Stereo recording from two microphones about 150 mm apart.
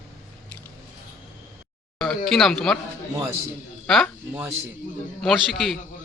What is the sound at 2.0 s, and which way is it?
Speech, 5° left (ahead or behind).